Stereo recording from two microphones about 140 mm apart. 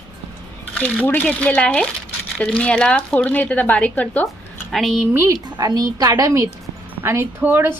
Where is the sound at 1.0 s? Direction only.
10° left (ahead or behind).